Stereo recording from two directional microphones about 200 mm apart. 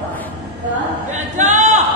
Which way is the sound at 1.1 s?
35° right (ahead or behind).